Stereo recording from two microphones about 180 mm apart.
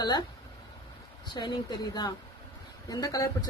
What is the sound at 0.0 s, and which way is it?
Speech, 25° left (ahead or behind).